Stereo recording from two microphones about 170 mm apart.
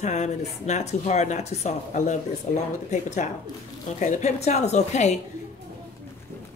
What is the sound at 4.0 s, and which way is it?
A woman's voice, 40° left (ahead or behind).